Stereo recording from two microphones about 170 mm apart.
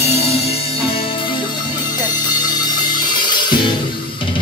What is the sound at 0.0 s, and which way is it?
Music, 35° left (ahead or behind).